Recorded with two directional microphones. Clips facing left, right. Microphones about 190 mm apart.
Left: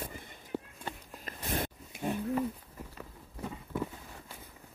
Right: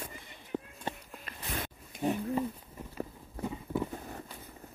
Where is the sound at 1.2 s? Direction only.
45° left (ahead or behind).